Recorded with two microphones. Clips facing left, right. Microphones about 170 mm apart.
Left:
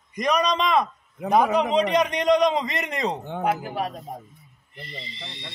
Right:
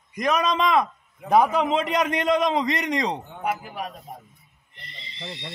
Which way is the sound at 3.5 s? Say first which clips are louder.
Left 5 dB; 80° left.